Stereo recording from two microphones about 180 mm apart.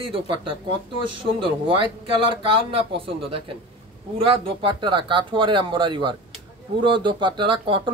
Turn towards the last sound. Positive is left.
turn(degrees=-30)  # may be behind; listen again after turning